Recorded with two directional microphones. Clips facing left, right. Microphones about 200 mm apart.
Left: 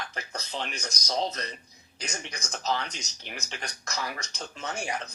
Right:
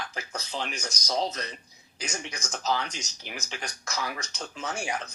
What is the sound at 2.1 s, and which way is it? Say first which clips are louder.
Speech: right 2 dB; 35° left (ahead or behind).